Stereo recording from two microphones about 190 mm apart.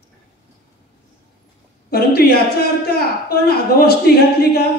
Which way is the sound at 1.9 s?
55° left (ahead or behind).